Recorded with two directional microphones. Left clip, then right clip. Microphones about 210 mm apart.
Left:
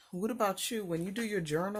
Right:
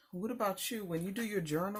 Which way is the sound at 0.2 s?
50° left (ahead or behind).